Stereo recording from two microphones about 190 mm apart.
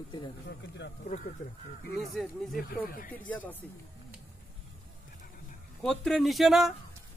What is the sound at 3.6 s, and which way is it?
Speech, 10° left (ahead or behind).